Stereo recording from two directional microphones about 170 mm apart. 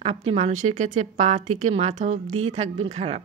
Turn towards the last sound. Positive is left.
turn(degrees=-40)  # may be behind; listen again after turning